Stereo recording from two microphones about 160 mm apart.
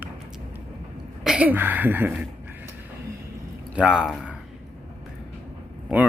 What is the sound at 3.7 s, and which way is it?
Speech, 5° right (ahead or behind).